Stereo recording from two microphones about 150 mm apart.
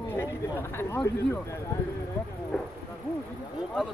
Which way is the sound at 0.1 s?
15° left (ahead or behind).